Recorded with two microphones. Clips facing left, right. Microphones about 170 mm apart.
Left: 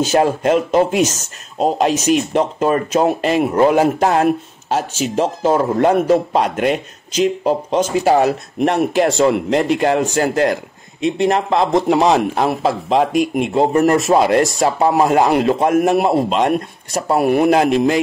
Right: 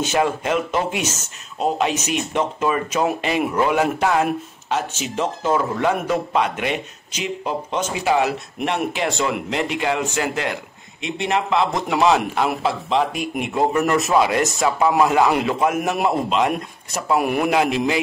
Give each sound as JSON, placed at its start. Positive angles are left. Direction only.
{"t": 0.0, "sound": "speech", "side_deg": 40}
{"t": 13.1, "sound": "speech", "side_deg": 0}
{"t": 13.5, "sound": "a man's voice", "side_deg": 30}